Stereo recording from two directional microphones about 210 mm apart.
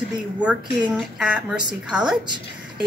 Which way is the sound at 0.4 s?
5° right (ahead or behind).